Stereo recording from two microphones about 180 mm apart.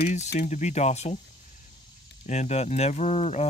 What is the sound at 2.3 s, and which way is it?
Speech, 40° left (ahead or behind).